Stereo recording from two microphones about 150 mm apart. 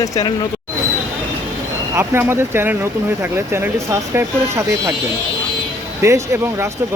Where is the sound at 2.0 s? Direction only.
15° right (ahead or behind).